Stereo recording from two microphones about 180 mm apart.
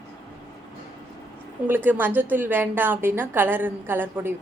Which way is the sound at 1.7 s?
10° right (ahead or behind).